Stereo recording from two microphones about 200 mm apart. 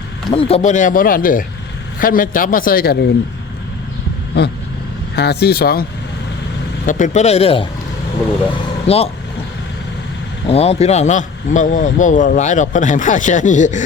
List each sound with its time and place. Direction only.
0.3 s speech: 30° left (ahead or behind); by 3.0 s 50° left (ahead or behind)
4.3 s vehicle: 55° left (ahead or behind)
5.1 s speech: 55° left (ahead or behind)
6.8 s speech: 40° left (ahead or behind)
8.9 s speech: 30° left (ahead or behind)
10.4 s speech: 30° left (ahead or behind)